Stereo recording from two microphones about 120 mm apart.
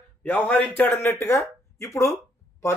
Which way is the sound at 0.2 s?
15° left (ahead or behind).